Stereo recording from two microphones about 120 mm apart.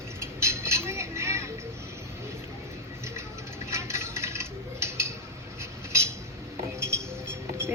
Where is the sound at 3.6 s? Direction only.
25° right (ahead or behind).